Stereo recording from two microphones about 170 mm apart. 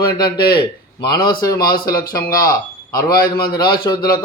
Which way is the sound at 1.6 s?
60° left (ahead or behind).